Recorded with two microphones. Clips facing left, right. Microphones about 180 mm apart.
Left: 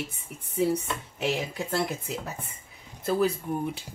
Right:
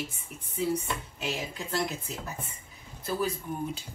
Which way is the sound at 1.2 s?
60° left (ahead or behind).